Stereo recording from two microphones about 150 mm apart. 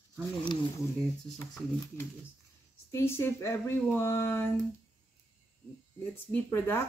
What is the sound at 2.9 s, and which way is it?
Speech, 15° left (ahead or behind).